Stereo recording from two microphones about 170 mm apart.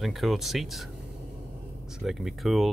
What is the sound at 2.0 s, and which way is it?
Speech, centre (ahead or behind).